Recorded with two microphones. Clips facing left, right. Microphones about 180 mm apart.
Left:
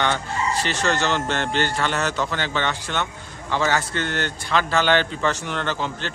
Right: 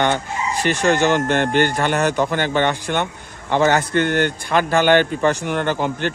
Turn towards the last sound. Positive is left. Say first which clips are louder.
# right 6 dB
turn(degrees=-50)  # may be behind; listen again after turning